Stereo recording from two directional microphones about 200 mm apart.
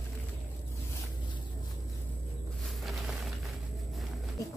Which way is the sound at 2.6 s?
Centre (ahead or behind).